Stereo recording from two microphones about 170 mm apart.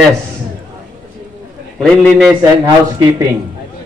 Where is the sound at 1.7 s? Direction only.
5° left (ahead or behind).